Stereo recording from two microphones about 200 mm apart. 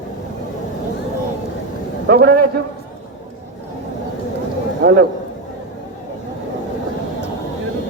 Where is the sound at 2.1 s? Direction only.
45° right (ahead or behind).